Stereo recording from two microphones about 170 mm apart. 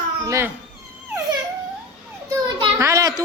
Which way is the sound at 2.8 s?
20° right (ahead or behind).